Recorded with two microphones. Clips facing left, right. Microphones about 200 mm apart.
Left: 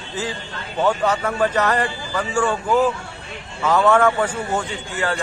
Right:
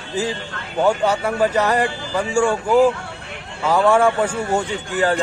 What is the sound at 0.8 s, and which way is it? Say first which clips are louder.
A man's voice: right 2 dB; 10° right (ahead or behind).